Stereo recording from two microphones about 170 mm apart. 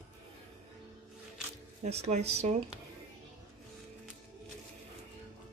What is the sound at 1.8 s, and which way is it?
Speech, 40° right (ahead or behind).